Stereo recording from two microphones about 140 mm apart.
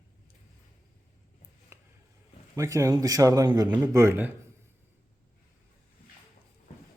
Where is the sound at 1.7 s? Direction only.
20° right (ahead or behind).